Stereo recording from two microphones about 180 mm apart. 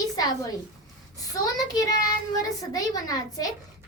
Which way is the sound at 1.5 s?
20° left (ahead or behind).